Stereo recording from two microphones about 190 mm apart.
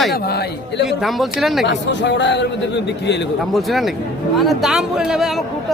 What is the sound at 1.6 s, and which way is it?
Speech, 70° left (ahead or behind).